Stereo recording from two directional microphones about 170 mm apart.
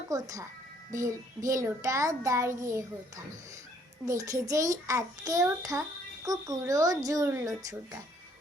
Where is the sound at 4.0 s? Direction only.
20° right (ahead or behind).